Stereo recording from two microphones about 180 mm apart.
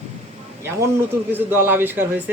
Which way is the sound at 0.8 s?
10° right (ahead or behind).